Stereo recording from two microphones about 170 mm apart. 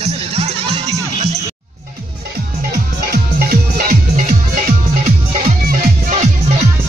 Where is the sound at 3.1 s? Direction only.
60° right (ahead or behind).